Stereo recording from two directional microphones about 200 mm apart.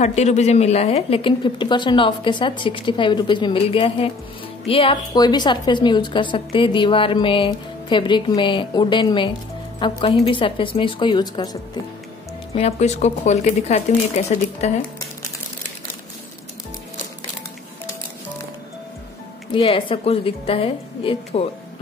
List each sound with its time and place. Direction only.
0.0 s a woman's voice: 35° left (ahead or behind)
12.5 s speech: 30° left (ahead or behind)
19.5 s a woman's voice: 25° left (ahead or behind)